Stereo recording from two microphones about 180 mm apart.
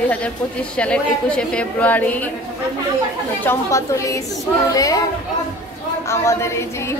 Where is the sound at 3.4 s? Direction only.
15° left (ahead or behind).